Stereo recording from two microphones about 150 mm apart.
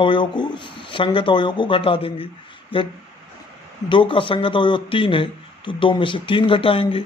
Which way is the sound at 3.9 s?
35° left (ahead or behind).